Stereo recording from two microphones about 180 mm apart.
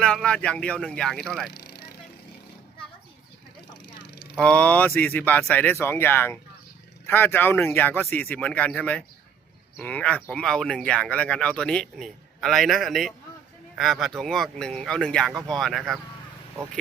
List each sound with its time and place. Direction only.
0.0 s speech: 5° left (ahead or behind)
1.5 s vehicle: 65° left (ahead or behind)
4.4 s speech: 5° left (ahead or behind)